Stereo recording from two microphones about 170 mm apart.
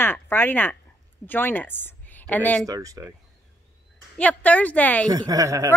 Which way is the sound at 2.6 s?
20° right (ahead or behind).